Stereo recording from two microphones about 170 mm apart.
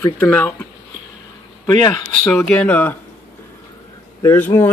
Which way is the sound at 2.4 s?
5° left (ahead or behind).